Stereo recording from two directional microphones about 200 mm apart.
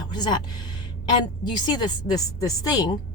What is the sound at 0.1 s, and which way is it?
Speech, 20° left (ahead or behind).